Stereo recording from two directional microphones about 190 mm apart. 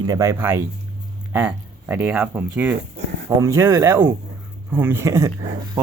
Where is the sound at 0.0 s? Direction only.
20° right (ahead or behind).